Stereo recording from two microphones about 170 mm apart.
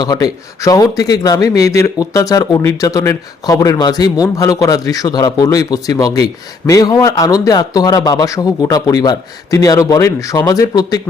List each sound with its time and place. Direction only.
0.0 s speech: 20° left (ahead or behind)